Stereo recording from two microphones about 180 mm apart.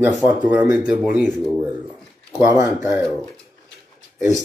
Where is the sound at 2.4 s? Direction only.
20° right (ahead or behind).